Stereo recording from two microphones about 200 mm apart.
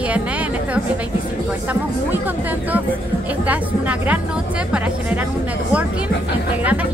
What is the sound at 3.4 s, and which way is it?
Speech, 5° right (ahead or behind).